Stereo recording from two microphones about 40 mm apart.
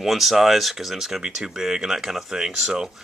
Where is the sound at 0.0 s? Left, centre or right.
Centre.